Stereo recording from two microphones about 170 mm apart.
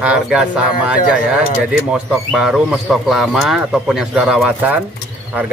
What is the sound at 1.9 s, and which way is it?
A man's voice, centre (ahead or behind).